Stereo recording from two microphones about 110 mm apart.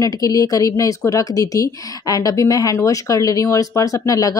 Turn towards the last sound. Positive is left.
turn(degrees=30)  # may be behind; listen again after turning